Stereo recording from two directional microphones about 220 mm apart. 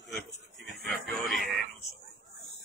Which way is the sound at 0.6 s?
Centre (ahead or behind).